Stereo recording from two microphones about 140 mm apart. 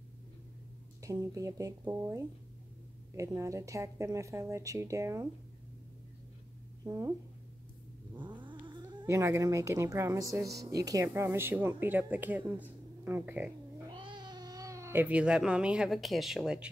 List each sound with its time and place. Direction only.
1.0 s speech: 25° right (ahead or behind)
6.8 s speech: 25° right (ahead or behind)
8.4 s cat: 35° right (ahead or behind)
8.8 s speech: 20° right (ahead or behind)
13.9 s speech: 35° right (ahead or behind); by 16.7 s 5° right (ahead or behind)